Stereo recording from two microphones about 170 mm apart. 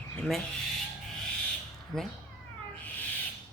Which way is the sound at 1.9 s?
5° left (ahead or behind).